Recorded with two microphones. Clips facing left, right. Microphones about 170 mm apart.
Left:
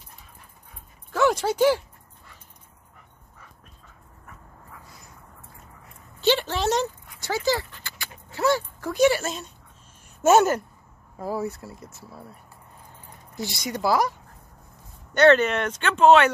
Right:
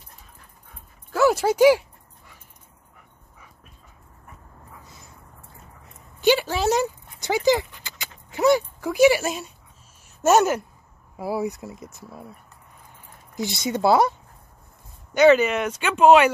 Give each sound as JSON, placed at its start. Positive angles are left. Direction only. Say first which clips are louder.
{"t": 1.1, "sound": "dog", "louder": "right 3 dB", "side_deg": -5}
{"t": 6.2, "sound": "speech", "louder": "right 3 dB", "side_deg": -10}
{"t": 7.1, "sound": "dog", "louder": "right 8 dB", "side_deg": -15}
{"t": 10.2, "sound": "speech", "louder": "even", "side_deg": -5}
{"t": 13.4, "sound": "speech", "louder": "right 5 dB", "side_deg": -20}
{"t": 15.1, "sound": "speech", "louder": "right 2 dB", "side_deg": -5}